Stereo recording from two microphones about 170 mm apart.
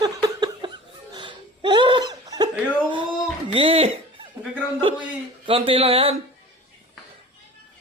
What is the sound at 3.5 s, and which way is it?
Speech, 30° right (ahead or behind).